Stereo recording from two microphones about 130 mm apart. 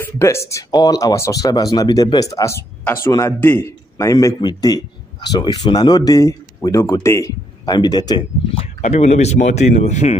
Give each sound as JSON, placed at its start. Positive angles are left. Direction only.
{"t": 0.0, "sound": "speech", "side_deg": 20}
{"t": 3.3, "sound": "a man's voice", "side_deg": 15}
{"t": 8.8, "sound": "speech", "side_deg": 55}